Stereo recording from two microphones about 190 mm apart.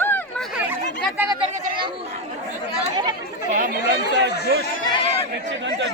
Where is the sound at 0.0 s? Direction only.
10° left (ahead or behind).